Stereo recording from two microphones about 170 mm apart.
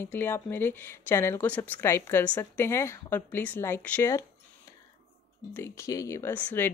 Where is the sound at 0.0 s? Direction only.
10° left (ahead or behind).